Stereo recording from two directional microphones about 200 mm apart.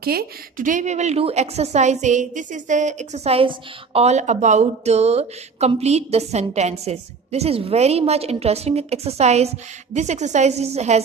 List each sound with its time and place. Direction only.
0.0 s a woman's voice: 45° right (ahead or behind)